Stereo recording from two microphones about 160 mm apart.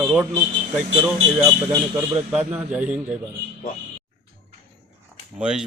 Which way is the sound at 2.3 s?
10° right (ahead or behind).